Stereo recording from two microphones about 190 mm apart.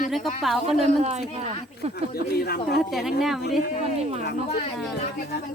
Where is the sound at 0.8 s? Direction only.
35° right (ahead or behind).